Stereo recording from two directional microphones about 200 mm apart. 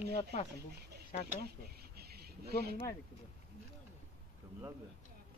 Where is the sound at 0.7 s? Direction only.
50° right (ahead or behind).